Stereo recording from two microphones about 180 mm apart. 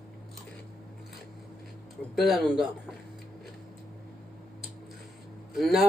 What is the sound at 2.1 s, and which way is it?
Speech, centre (ahead or behind).